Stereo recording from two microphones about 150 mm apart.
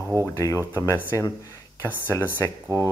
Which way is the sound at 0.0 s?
15° right (ahead or behind).